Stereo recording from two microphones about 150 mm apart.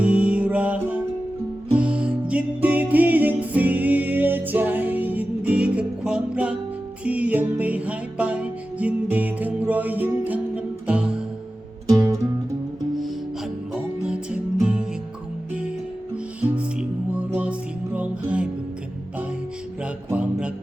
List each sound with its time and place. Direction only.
0.0 s music: 10° right (ahead or behind)
11.9 s music: 25° right (ahead or behind)
14.0 s music: 5° right (ahead or behind)
16.4 s music: 10° right (ahead or behind)
19.8 s music: 10° right (ahead or behind)